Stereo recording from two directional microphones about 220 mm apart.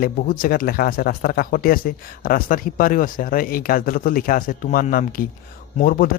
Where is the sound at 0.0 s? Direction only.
40° left (ahead or behind).